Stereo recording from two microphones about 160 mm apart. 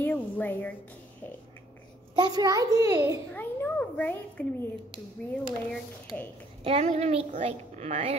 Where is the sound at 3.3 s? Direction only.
10° left (ahead or behind).